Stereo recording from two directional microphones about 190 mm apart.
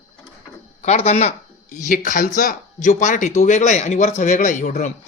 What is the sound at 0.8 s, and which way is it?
Speech, 35° left (ahead or behind).